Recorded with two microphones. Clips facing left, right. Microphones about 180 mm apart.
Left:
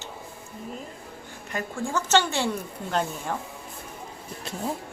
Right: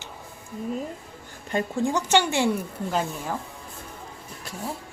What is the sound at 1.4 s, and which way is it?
A woman's voice, 25° right (ahead or behind).